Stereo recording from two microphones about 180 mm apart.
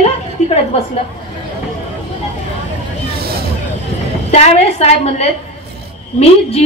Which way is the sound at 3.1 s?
60° right (ahead or behind).